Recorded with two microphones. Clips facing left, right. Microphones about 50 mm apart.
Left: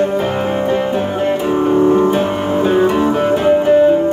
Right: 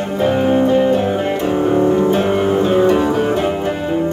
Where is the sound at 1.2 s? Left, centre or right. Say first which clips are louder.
Left 2 dB; centre.